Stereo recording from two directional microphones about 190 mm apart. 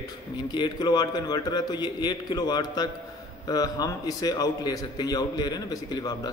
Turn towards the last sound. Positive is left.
turn(degrees=20)  # may be behind; listen again after turning